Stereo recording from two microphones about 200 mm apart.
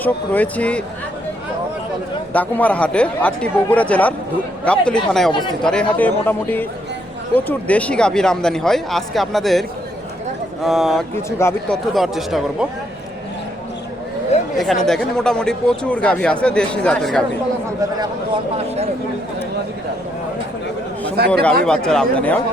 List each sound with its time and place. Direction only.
0.0 s speech: 10° left (ahead or behind)
2.3 s speech: 10° left (ahead or behind)
11.1 s speech: 15° left (ahead or behind)
11.9 s speech: centre (ahead or behind)
14.6 s speech: centre (ahead or behind)
21.2 s speech: 55° right (ahead or behind)
21.6 s speech: 5° left (ahead or behind)